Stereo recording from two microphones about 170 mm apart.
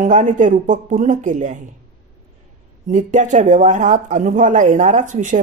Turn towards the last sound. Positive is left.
turn(degrees=-45)  # may be behind; listen again after turning